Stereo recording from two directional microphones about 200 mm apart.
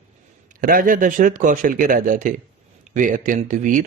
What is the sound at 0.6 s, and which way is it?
Speech, 45° right (ahead or behind).